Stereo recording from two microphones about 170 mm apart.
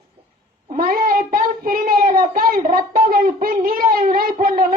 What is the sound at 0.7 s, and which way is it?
Child singing, 55° right (ahead or behind).